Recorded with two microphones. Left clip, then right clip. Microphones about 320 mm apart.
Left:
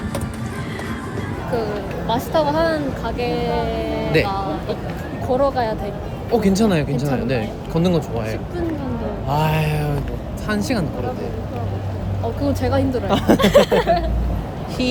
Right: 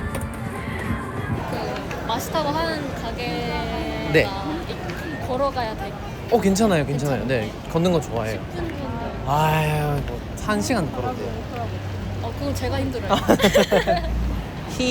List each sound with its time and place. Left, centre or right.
2.0 s speech: centre
5.3 s speech: centre
6.3 s speech: centre
9.3 s speech: centre
12.6 s speech: centre
13.1 s speech: centre
13.4 s speech: left